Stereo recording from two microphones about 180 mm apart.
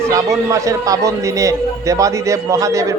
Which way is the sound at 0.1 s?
15° right (ahead or behind).